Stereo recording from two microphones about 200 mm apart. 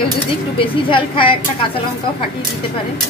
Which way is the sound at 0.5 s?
25° left (ahead or behind).